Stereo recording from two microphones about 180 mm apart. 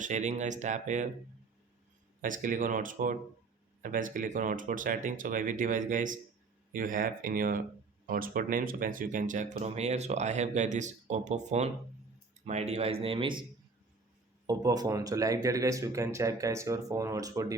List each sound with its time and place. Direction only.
0.0 s speech: 40° right (ahead or behind)
2.2 s speech: 50° right (ahead or behind); by 13.4 s 30° right (ahead or behind)
14.4 s speech: 20° right (ahead or behind)